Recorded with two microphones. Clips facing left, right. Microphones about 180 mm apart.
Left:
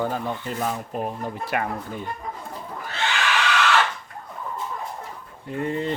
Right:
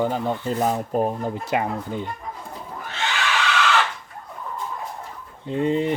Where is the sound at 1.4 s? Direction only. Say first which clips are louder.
Right 2 dB; 20° right (ahead or behind).